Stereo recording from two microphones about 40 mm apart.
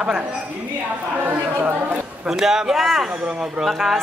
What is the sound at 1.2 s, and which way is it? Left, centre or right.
Speech, right.